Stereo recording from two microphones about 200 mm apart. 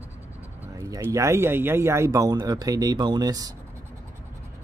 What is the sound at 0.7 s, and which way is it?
Speech, 15° right (ahead or behind).